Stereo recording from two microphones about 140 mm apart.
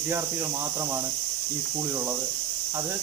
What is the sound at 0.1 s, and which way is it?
Speech, 15° right (ahead or behind).